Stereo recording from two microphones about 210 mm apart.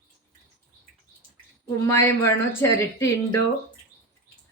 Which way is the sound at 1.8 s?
10° left (ahead or behind).